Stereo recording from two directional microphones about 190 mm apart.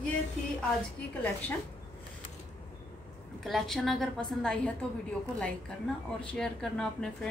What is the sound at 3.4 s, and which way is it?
A woman's voice, centre (ahead or behind).